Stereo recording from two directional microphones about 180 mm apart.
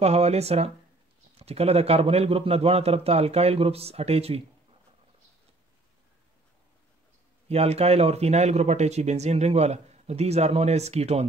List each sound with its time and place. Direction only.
0.0 s speech: 35° right (ahead or behind)
7.4 s speech: 35° right (ahead or behind)